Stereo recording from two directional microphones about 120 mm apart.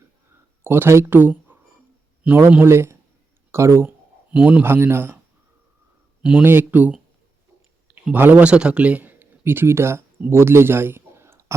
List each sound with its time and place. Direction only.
0.6 s a man's voice: 20° right (ahead or behind)
6.2 s speech: 15° right (ahead or behind)
8.1 s a man's voice: 15° right (ahead or behind)